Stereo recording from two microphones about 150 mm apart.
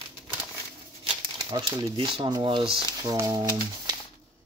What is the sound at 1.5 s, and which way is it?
Speech, 20° right (ahead or behind).